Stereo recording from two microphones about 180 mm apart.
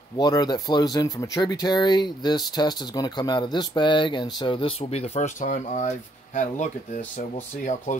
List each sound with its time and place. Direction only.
0.2 s speech: 20° left (ahead or behind); by 6.7 s 40° left (ahead or behind)